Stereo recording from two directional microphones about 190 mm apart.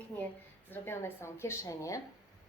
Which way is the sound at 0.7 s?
10° left (ahead or behind).